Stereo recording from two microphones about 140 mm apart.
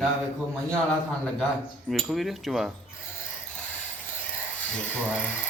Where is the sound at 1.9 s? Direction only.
Centre (ahead or behind).